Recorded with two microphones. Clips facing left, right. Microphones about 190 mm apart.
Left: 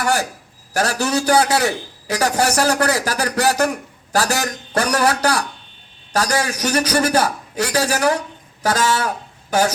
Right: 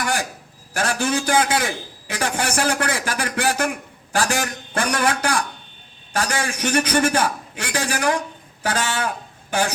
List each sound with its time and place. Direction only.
0.8 s a man's voice: 40° left (ahead or behind)